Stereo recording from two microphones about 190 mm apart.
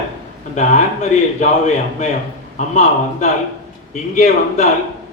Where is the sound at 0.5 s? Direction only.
40° left (ahead or behind).